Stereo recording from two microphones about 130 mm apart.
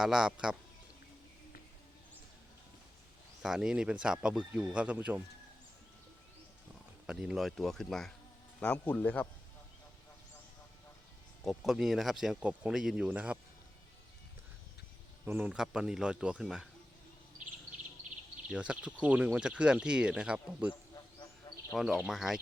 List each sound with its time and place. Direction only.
0.0 s speech: 5° right (ahead or behind)
3.4 s speech: 5° right (ahead or behind)
7.1 s speech: 5° right (ahead or behind); by 9.2 s 10° left (ahead or behind)
11.4 s speech: centre (ahead or behind)
15.2 s speech: 15° right (ahead or behind)
18.4 s speech: 10° right (ahead or behind)
21.5 s bird: 25° left (ahead or behind)
21.8 s speech: 5° right (ahead or behind)